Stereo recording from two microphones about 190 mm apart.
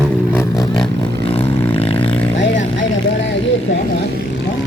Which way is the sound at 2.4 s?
70° left (ahead or behind).